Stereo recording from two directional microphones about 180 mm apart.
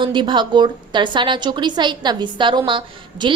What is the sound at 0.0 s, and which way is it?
A woman's voice, 25° right (ahead or behind).